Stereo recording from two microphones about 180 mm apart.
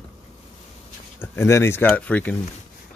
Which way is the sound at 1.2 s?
15° left (ahead or behind).